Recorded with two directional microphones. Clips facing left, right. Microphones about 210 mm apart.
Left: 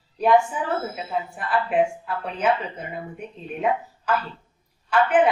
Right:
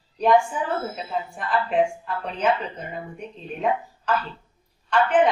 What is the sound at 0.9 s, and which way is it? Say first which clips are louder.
A woman's voice: left 1 dB; 5° left (ahead or behind).